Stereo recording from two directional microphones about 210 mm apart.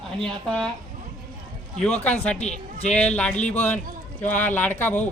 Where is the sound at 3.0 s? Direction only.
5° left (ahead or behind).